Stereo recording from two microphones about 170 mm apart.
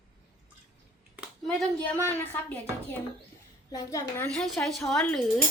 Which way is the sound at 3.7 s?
20° left (ahead or behind).